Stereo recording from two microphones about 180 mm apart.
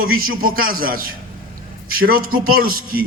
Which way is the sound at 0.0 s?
55° right (ahead or behind).